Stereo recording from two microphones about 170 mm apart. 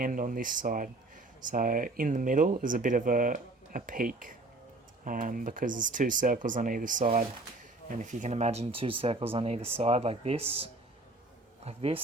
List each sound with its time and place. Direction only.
0.0 s speech: 55° right (ahead or behind); by 12.0 s 35° right (ahead or behind)